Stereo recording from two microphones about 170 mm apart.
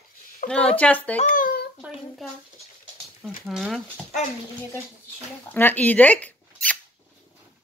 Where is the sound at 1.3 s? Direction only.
55° left (ahead or behind).